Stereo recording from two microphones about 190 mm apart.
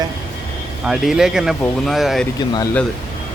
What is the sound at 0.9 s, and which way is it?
Speech, 5° right (ahead or behind).